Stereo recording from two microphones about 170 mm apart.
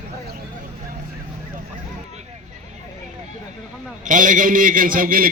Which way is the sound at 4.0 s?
50° right (ahead or behind).